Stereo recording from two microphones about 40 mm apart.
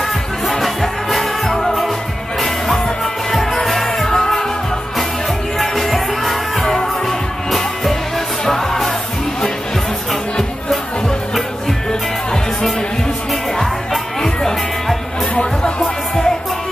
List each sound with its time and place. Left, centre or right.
1.1 s music: centre
3.3 s music: centre
5.6 s music: centre
14.2 s music: centre
15.3 s music: left